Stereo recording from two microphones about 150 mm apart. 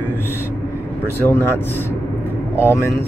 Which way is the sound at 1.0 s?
15° left (ahead or behind).